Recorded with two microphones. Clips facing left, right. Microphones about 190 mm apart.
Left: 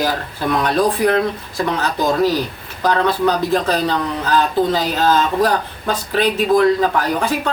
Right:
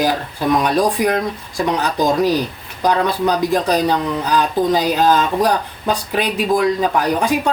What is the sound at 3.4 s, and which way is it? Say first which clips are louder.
Speech: right 1 dB; 15° right (ahead or behind).